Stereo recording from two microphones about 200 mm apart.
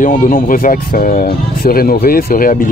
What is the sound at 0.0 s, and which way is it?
Speech, 40° left (ahead or behind).